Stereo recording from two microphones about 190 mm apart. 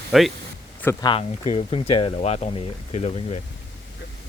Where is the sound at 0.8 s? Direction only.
15° left (ahead or behind).